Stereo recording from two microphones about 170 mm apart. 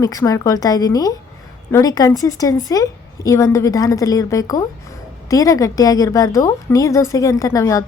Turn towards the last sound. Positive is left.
turn(degrees=20)  # may be behind; listen again after turning